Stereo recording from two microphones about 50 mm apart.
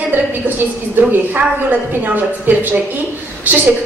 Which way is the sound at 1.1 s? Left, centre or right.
Right.